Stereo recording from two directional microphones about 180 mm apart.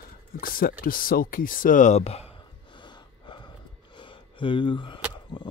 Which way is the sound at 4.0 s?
25° left (ahead or behind).